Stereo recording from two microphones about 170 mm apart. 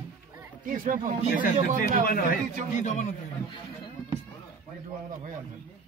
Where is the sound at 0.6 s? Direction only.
50° right (ahead or behind).